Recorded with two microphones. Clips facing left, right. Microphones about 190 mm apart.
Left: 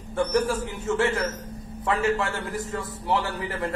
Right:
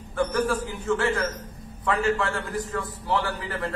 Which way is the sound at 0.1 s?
25° left (ahead or behind).